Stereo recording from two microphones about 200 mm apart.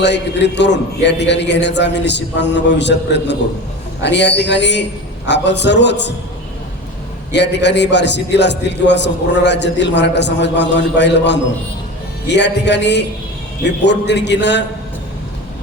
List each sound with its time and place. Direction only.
0.0 s a man's voice: 60° left (ahead or behind)
7.3 s a man's voice: 60° left (ahead or behind)